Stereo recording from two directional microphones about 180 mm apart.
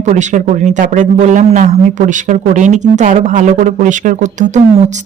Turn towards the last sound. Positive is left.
turn(degrees=-40)  # may be behind; listen again after turning